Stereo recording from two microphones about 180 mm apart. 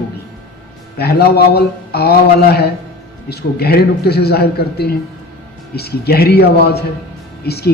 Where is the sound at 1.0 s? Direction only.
60° left (ahead or behind).